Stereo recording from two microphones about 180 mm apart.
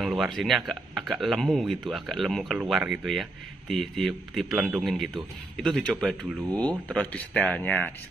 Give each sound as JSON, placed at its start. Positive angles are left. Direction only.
{"t": 0.0, "sound": "speech", "side_deg": 0}